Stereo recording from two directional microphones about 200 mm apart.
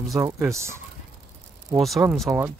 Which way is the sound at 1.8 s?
Centre (ahead or behind).